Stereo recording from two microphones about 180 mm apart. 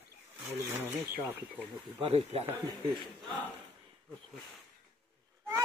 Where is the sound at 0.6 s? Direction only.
15° right (ahead or behind).